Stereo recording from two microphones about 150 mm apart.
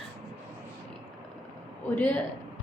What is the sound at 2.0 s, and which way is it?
Speech, 10° left (ahead or behind).